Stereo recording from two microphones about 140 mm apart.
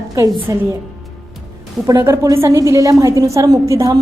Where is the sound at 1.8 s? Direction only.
20° right (ahead or behind).